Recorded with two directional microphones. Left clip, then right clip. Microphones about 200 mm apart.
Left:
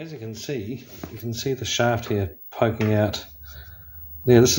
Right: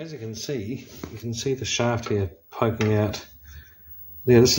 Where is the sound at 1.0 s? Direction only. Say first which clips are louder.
Even; 15° left (ahead or behind).